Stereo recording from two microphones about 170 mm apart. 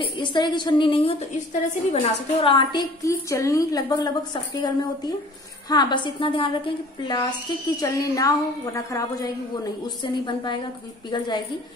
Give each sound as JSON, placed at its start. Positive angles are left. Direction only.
{"t": 0.0, "sound": "a woman's voice", "side_deg": 30}